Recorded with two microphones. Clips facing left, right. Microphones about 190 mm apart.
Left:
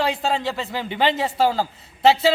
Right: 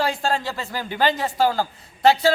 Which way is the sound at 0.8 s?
25° left (ahead or behind).